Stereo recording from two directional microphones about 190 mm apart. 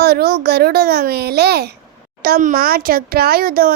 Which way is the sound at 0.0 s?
55° right (ahead or behind).